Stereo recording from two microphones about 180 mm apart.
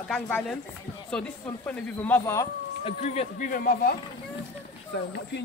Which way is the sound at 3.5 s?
50° left (ahead or behind).